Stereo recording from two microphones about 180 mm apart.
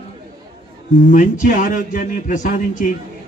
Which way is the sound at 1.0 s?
45° left (ahead or behind).